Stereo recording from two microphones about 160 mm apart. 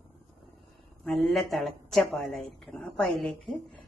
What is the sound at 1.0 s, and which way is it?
A woman's voice, centre (ahead or behind).